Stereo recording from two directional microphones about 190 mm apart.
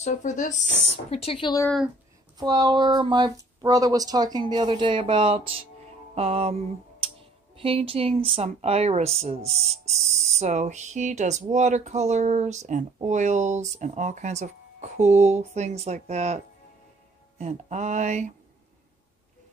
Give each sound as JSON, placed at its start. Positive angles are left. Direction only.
{"t": 0.0, "sound": "speech", "side_deg": 40}
{"t": 0.7, "sound": "speech", "side_deg": 70}
{"t": 1.1, "sound": "speech", "side_deg": 30}
{"t": 2.4, "sound": "a woman's voice", "side_deg": -20}
{"t": 7.5, "sound": "speech", "side_deg": -30}